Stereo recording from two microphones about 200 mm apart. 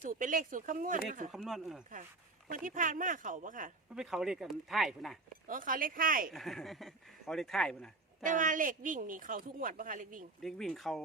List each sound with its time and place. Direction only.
0.0 s speech: 40° right (ahead or behind)
1.3 s speech: centre (ahead or behind)
2.5 s speech: 40° right (ahead or behind)
3.9 s speech: centre (ahead or behind)
5.5 s speech: 45° right (ahead or behind)
6.3 s speech: centre (ahead or behind)
8.2 s speech: 40° right (ahead or behind)
10.4 s speech: centre (ahead or behind)